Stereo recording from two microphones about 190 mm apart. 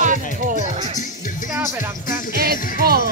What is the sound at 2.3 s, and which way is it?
Music, 55° right (ahead or behind).